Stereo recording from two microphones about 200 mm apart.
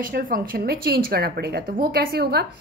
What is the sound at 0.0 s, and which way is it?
Speech, 45° right (ahead or behind).